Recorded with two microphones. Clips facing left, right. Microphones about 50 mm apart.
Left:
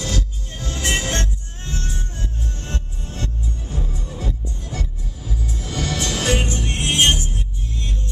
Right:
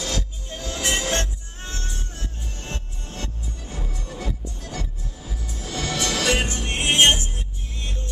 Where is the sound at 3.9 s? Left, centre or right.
Centre.